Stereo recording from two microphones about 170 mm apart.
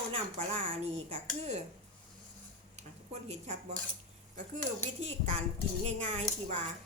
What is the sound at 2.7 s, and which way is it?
Speech, 40° right (ahead or behind).